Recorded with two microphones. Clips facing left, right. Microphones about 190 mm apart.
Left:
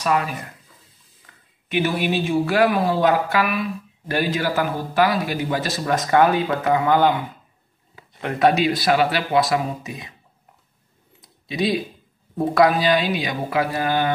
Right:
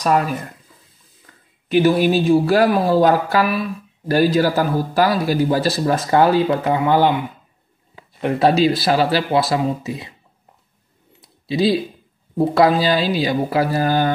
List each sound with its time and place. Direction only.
0.0 s speech: 40° right (ahead or behind); by 7.2 s 20° right (ahead or behind)
8.4 s speech: 30° right (ahead or behind)
11.1 s computer keyboard: 30° right (ahead or behind)
12.4 s speech: 30° right (ahead or behind)